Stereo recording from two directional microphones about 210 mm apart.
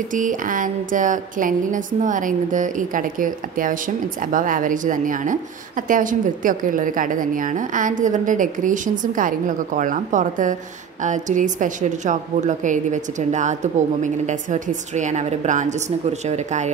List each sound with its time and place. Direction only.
0.1 s a woman's voice: 40° right (ahead or behind)